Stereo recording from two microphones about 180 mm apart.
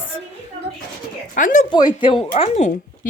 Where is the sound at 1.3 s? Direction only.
45° left (ahead or behind).